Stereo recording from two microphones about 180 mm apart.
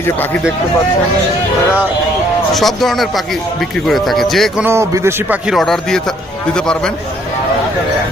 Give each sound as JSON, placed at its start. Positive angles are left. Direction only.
{"t": 2.5, "sound": "a man's voice", "side_deg": 0}
{"t": 4.6, "sound": "speech", "side_deg": -15}
{"t": 5.5, "sound": "a man's voice", "side_deg": 0}